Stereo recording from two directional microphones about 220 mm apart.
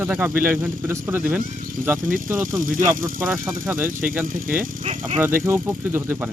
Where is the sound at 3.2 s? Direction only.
10° right (ahead or behind).